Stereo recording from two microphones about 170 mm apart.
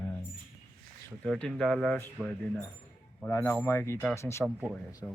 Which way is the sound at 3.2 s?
15° left (ahead or behind).